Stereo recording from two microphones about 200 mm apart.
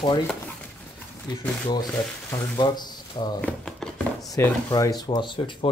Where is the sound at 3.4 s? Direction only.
5° left (ahead or behind).